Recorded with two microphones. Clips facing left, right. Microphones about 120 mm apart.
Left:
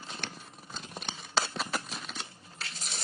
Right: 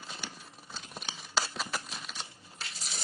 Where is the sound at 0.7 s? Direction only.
5° right (ahead or behind).